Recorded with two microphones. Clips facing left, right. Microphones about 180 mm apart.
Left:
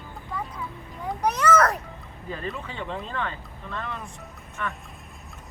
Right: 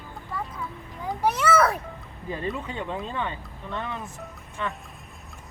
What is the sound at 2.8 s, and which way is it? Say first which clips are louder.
Speech: right 1 dB; 10° right (ahead or behind).